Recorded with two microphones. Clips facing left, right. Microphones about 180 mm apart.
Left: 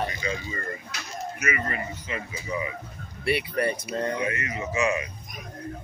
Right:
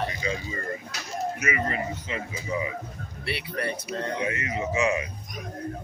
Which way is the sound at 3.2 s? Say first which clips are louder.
Left 6 dB; 15° left (ahead or behind).